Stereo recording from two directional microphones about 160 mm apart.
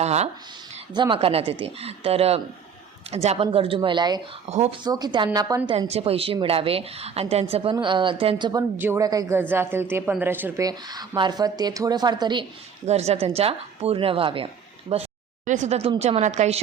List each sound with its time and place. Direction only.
0.0 s a woman's voice: 45° right (ahead or behind)
0.9 s a woman's voice: 30° right (ahead or behind)
4.4 s a woman's voice: 45° right (ahead or behind)
4.8 s speech: 25° right (ahead or behind)
5.9 s a woman's voice: 40° right (ahead or behind)
8.8 s speech: 15° right (ahead or behind)
10.7 s speech: 25° right (ahead or behind)
12.8 s a woman's voice: 40° right (ahead or behind)
15.4 s a woman's voice: 50° right (ahead or behind)